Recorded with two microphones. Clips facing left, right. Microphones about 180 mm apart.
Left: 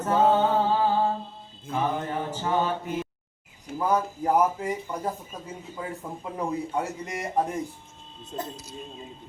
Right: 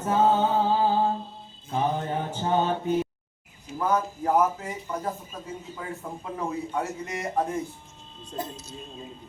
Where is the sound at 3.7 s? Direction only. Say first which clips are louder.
Left 1 dB; 55° left (ahead or behind).